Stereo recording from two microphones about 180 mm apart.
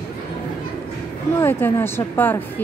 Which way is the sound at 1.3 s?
10° left (ahead or behind).